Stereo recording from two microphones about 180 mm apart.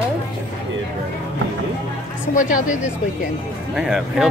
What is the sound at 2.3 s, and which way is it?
Speech, 45° left (ahead or behind).